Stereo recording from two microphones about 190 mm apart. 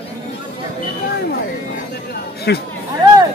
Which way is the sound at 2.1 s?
55° left (ahead or behind).